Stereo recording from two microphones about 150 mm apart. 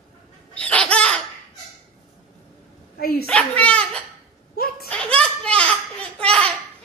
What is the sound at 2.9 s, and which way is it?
Dog, 90° left.